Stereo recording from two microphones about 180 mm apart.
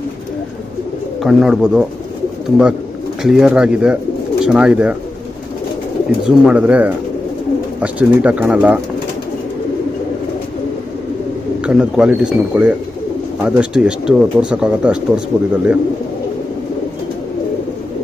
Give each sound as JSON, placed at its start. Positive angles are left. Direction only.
{"t": 1.2, "sound": "speech", "side_deg": -5}
{"t": 3.2, "sound": "speech", "side_deg": -5}
{"t": 6.2, "sound": "speech", "side_deg": -5}
{"t": 11.6, "sound": "speech", "side_deg": -5}